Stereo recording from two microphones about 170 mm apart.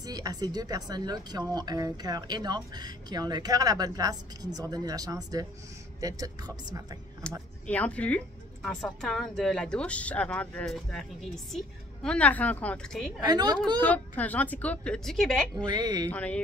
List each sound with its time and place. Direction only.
0.0 s speech: 20° right (ahead or behind)
7.2 s a woman's voice: 5° left (ahead or behind)
13.2 s speech: 25° right (ahead or behind)
13.7 s a woman's voice: 10° left (ahead or behind)
15.5 s speech: 25° right (ahead or behind)
16.1 s a woman's voice: 10° left (ahead or behind)